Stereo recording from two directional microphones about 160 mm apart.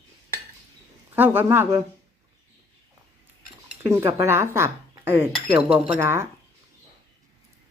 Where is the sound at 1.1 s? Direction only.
10° right (ahead or behind).